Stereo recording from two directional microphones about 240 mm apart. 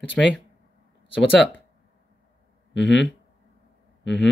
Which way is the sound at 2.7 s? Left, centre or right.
Left.